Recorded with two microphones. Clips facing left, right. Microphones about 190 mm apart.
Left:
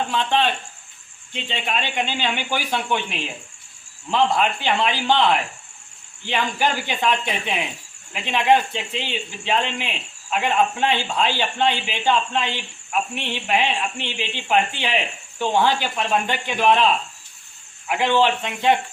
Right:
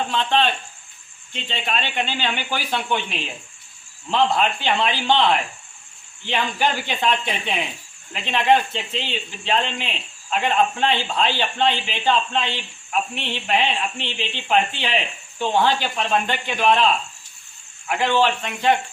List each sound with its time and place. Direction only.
0.1 s a man's voice: 10° left (ahead or behind)